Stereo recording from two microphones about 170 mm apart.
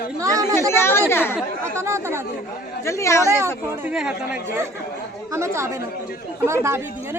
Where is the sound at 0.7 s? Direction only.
15° left (ahead or behind).